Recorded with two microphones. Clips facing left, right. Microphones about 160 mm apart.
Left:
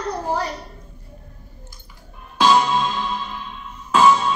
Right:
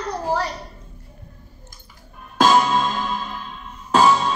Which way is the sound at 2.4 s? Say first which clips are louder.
Even; 45° right (ahead or behind).